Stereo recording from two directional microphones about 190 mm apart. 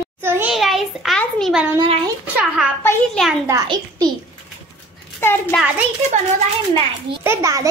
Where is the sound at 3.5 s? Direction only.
20° right (ahead or behind).